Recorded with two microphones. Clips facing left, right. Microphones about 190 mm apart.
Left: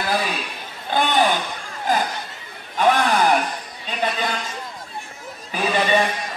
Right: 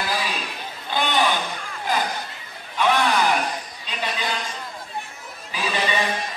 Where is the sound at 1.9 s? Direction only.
50° left (ahead or behind).